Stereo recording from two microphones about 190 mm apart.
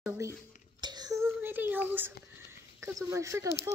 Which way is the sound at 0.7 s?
20° right (ahead or behind).